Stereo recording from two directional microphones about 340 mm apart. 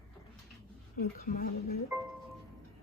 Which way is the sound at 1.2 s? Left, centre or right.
Left.